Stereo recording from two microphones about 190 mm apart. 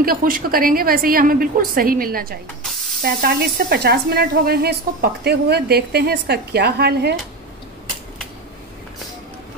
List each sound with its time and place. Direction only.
0.0 s a woman's voice: 50° right (ahead or behind)